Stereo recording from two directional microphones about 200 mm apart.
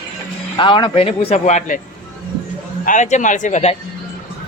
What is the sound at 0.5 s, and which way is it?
Speech, 25° left (ahead or behind).